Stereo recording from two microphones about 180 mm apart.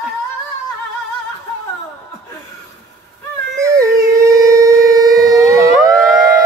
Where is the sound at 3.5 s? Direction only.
20° right (ahead or behind).